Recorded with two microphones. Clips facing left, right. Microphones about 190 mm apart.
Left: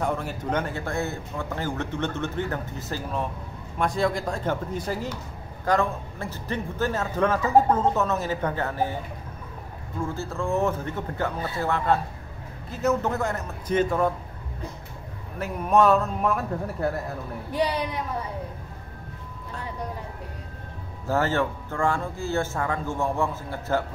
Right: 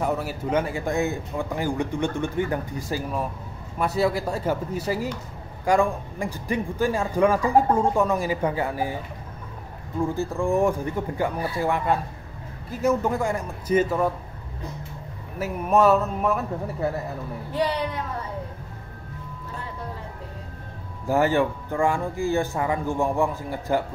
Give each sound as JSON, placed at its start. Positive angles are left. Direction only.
{"t": 0.0, "sound": "a man's voice", "side_deg": -5}
{"t": 10.0, "sound": "a man's voice", "side_deg": -15}
{"t": 15.3, "sound": "a man's voice", "side_deg": -5}
{"t": 17.5, "sound": "speech", "side_deg": 15}
{"t": 21.1, "sound": "a man's voice", "side_deg": -15}